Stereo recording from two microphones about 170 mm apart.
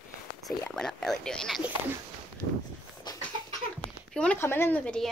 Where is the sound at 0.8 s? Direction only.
5° left (ahead or behind).